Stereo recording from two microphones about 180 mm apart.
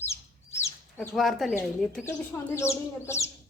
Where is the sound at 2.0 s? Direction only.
15° left (ahead or behind).